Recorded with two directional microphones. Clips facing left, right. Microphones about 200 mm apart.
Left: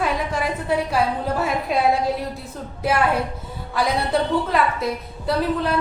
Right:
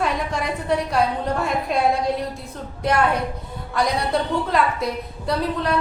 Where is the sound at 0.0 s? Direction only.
5° left (ahead or behind).